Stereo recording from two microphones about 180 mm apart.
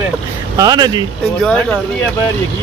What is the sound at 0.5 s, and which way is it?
Speech, 20° right (ahead or behind).